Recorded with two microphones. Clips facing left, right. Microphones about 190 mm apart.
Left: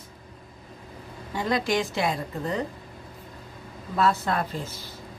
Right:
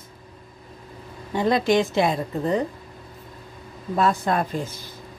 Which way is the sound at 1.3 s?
25° right (ahead or behind).